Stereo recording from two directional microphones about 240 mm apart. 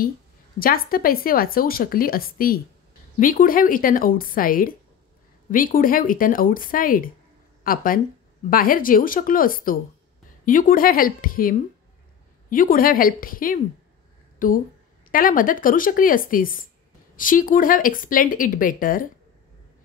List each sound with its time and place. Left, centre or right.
0.6 s speech: left